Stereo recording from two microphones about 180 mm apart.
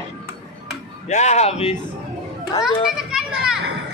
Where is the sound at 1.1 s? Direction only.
40° left (ahead or behind).